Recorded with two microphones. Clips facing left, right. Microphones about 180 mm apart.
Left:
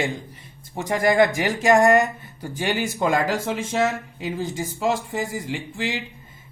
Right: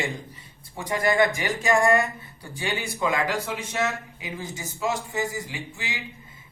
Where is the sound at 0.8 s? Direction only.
45° left (ahead or behind).